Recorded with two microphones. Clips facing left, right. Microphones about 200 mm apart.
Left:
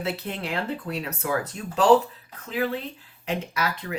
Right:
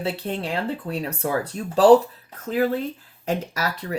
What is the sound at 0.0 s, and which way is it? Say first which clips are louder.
Speech: right 3 dB; 30° right (ahead or behind).